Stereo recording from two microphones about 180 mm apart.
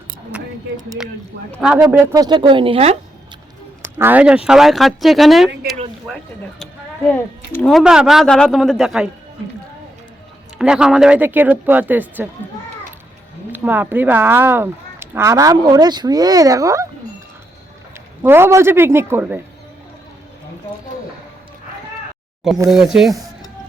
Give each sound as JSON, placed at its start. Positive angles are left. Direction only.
{"t": 0.3, "sound": "a sound", "side_deg": -5}
{"t": 1.6, "sound": "speech", "side_deg": -5}
{"t": 2.0, "sound": "speech", "side_deg": -20}
{"t": 3.9, "sound": "a man's voice", "side_deg": -10}
{"t": 7.5, "sound": "a man's voice", "side_deg": 5}
{"t": 10.6, "sound": "speech", "side_deg": -5}
{"t": 13.5, "sound": "speech", "side_deg": -10}
{"t": 18.2, "sound": "speech", "side_deg": -15}
{"t": 22.7, "sound": "a man's voice", "side_deg": 0}